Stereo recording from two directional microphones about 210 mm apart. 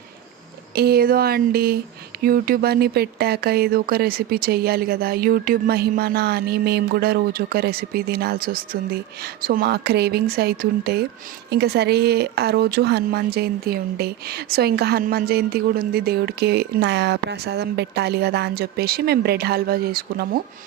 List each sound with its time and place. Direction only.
0.8 s speech: 50° right (ahead or behind)